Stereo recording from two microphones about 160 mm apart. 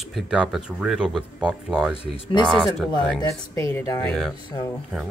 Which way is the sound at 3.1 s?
20° left (ahead or behind).